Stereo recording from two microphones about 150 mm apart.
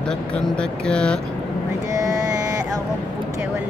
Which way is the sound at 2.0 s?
25° right (ahead or behind).